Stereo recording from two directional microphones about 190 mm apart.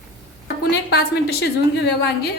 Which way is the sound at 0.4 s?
60° left (ahead or behind).